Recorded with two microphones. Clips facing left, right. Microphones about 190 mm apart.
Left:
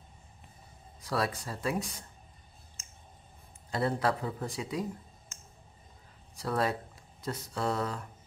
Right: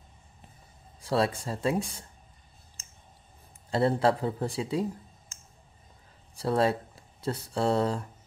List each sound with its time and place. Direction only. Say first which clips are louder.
1.0 s speech: right 5 dB; 25° right (ahead or behind)
3.7 s speech: right 5 dB; 30° right (ahead or behind)
6.3 s speech: right 5 dB; 30° right (ahead or behind)